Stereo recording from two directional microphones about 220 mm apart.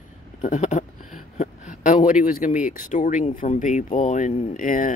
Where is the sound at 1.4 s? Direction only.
35° left (ahead or behind).